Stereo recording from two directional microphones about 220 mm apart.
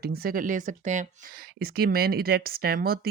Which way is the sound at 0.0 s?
45° right (ahead or behind).